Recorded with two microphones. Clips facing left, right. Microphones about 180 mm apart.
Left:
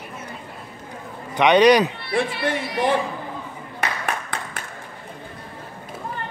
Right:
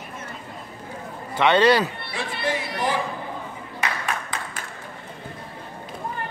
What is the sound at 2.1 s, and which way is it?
Speech, 55° left (ahead or behind).